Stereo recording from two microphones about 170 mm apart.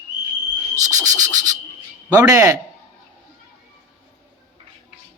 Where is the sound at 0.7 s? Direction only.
20° right (ahead or behind).